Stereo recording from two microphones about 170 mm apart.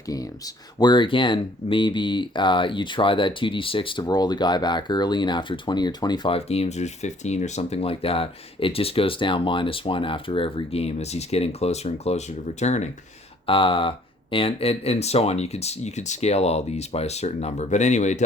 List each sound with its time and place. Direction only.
0.8 s speech: 25° left (ahead or behind); by 12.9 s 40° left (ahead or behind)
13.5 s speech: 30° left (ahead or behind)